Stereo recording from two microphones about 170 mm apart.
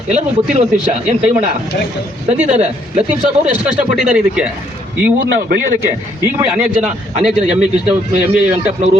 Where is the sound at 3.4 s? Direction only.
5° right (ahead or behind).